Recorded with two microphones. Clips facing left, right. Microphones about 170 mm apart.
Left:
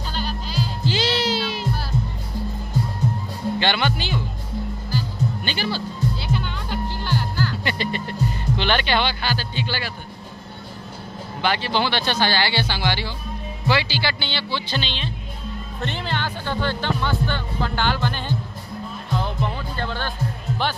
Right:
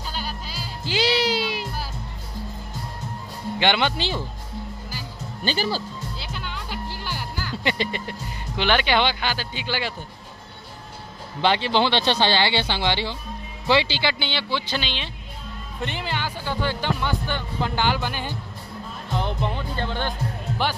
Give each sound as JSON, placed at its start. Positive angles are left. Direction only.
{"t": 0.1, "sound": "music", "side_deg": -10}
{"t": 3.5, "sound": "speech", "side_deg": -20}
{"t": 5.4, "sound": "speech", "side_deg": -35}
{"t": 6.1, "sound": "music", "side_deg": 0}
{"t": 11.4, "sound": "speech", "side_deg": -20}
{"t": 19.1, "sound": "music", "side_deg": -20}